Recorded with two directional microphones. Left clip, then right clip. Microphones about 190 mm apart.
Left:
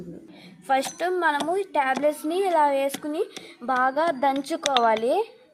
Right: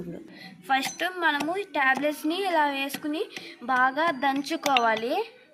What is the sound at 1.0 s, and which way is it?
Speech, 15° left (ahead or behind).